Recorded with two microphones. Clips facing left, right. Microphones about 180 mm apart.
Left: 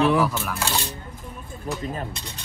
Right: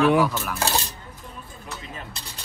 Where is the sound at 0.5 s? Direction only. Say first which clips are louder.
Right 2 dB; 35° right (ahead or behind).